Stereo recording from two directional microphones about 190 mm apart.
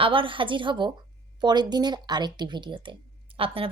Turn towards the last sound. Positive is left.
turn(degrees=-30)  # may be behind; listen again after turning